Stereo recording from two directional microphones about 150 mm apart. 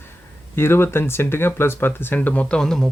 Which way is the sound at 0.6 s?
15° left (ahead or behind).